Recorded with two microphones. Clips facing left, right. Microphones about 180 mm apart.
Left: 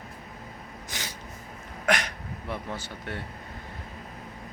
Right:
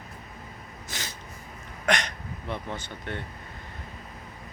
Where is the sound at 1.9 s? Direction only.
5° left (ahead or behind).